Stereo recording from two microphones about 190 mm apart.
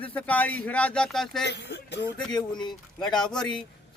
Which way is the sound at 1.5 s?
65° left (ahead or behind).